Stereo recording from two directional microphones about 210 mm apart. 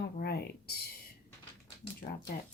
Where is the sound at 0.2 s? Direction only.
50° left (ahead or behind).